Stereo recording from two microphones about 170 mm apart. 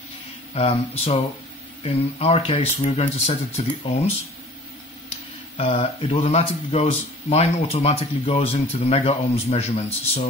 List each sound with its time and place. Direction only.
0.6 s speech: 35° left (ahead or behind)
5.6 s speech: 35° left (ahead or behind)